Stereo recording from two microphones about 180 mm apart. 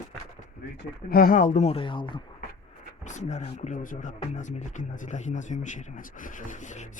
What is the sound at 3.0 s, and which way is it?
Speech, 40° left (ahead or behind).